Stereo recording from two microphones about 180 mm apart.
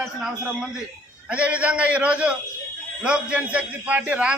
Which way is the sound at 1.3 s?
5° right (ahead or behind).